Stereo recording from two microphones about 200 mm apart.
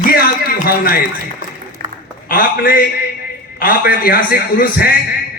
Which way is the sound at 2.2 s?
45° left (ahead or behind).